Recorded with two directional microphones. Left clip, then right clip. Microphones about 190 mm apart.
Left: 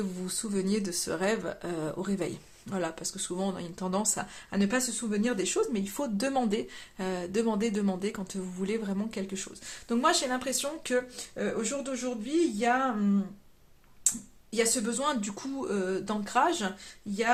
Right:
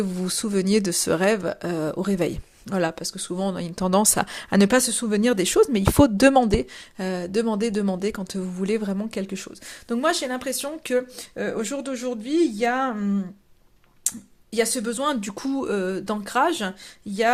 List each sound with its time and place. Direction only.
0.0 s speech: 35° right (ahead or behind)
14.5 s speech: 45° right (ahead or behind)